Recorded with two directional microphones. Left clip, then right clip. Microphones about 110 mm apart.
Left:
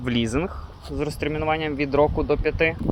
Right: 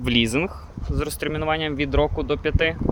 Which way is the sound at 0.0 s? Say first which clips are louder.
Right 4 dB; 35° right (ahead or behind).